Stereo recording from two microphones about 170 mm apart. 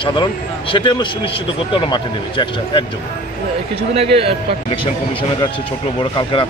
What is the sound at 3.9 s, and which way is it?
Speech, 35° right (ahead or behind).